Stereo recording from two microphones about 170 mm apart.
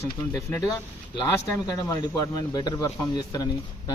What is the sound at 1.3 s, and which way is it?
Speech, 20° left (ahead or behind).